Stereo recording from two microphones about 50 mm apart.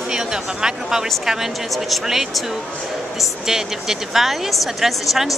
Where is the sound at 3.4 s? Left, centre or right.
Centre.